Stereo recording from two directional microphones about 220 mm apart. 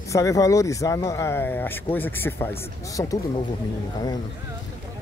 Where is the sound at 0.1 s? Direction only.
15° left (ahead or behind).